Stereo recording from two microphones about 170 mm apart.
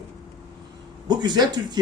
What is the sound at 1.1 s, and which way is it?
Speech, 25° right (ahead or behind).